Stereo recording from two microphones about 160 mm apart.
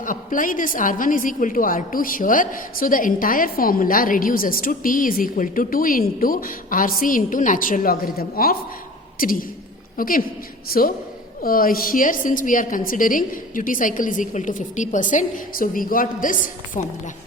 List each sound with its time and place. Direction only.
0.0 s a woman's voice: 55° left (ahead or behind)